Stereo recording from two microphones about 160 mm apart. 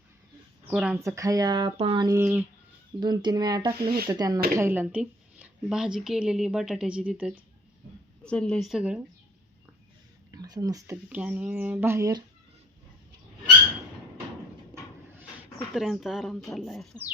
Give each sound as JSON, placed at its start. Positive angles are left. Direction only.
{"t": 0.7, "sound": "a woman's voice", "side_deg": -5}
{"t": 1.0, "sound": "speech", "side_deg": -20}
{"t": 1.7, "sound": "music", "side_deg": -35}
{"t": 2.0, "sound": "speech", "side_deg": -15}
{"t": 3.0, "sound": "speech", "side_deg": -25}
{"t": 4.5, "sound": "a woman's voice", "side_deg": -15}
{"t": 8.2, "sound": "a woman's voice", "side_deg": 5}
{"t": 10.3, "sound": "speech", "side_deg": -25}
{"t": 10.9, "sound": "speech", "side_deg": -10}
{"t": 15.5, "sound": "a woman's voice", "side_deg": 0}